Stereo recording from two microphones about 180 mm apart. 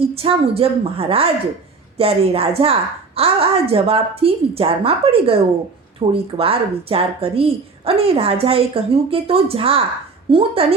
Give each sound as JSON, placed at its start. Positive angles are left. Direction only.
{"t": 0.0, "sound": "a woman's voice", "side_deg": -30}